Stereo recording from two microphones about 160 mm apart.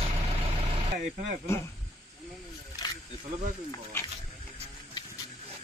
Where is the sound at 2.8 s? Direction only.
25° left (ahead or behind).